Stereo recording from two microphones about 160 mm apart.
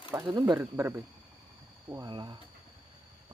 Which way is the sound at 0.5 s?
15° right (ahead or behind).